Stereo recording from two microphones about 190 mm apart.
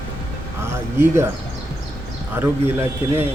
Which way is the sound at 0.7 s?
15° right (ahead or behind).